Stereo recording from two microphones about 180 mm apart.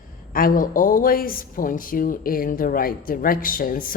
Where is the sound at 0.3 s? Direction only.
50° left (ahead or behind).